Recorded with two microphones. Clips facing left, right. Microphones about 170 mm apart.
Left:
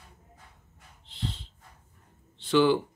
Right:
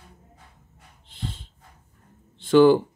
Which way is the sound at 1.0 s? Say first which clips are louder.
Right 1 dB; 50° right (ahead or behind).